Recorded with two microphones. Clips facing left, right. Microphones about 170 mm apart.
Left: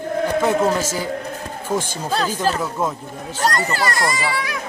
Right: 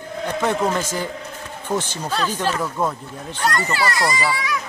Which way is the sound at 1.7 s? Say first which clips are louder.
Left 1 dB; 10° right (ahead or behind).